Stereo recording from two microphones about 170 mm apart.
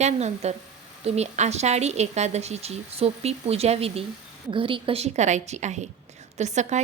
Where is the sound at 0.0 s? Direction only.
40° right (ahead or behind).